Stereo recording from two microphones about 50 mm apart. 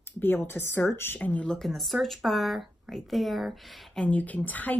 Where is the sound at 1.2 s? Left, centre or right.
Left.